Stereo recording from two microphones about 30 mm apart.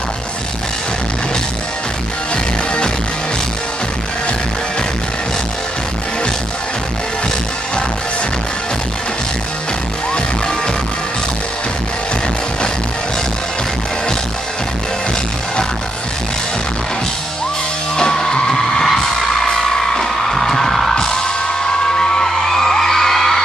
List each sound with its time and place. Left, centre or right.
17.9 s music: centre
20.9 s music: left